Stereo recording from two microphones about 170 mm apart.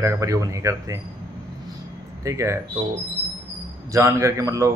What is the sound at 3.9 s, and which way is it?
Speech, 15° right (ahead or behind).